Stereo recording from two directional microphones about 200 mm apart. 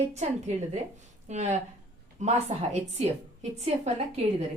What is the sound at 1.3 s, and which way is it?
A woman's voice, 35° right (ahead or behind).